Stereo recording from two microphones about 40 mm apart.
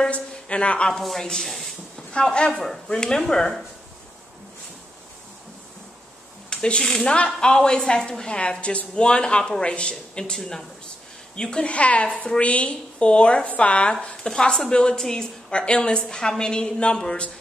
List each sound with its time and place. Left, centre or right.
0.1 s a woman's voice: left
1.4 s a sound: centre
2.1 s a woman's voice: left
6.5 s a woman's voice: left
8.4 s a woman's voice: left
10.3 s speech: centre
11.3 s a woman's voice: left
11.7 s a woman's voice: left
14.0 s a woman's voice: left
15.5 s a woman's voice: left